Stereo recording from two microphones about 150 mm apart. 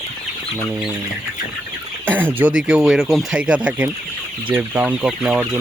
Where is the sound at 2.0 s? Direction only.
10° right (ahead or behind).